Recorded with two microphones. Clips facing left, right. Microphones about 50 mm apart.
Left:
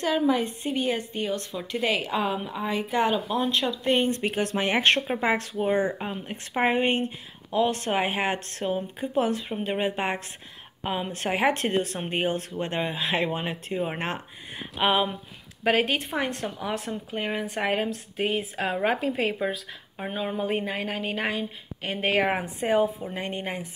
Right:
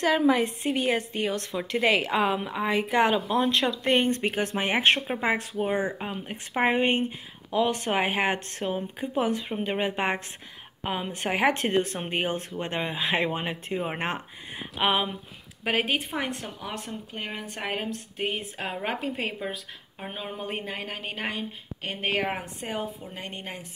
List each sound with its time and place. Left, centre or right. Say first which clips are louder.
0.0 s a woman's voice: right 2 dB; right
2.1 s a woman's voice: right 2 dB; right
4.2 s speech: left 1 dB; right
4.7 s speech: even; centre; by 10.2 s right
10.8 s speech: left 1 dB; right
15.6 s speech: left 3 dB; centre
16.6 s speech: left 4 dB; centre
20.3 s speech: left 6 dB; centre
22.4 s a woman's voice: left 9 dB; left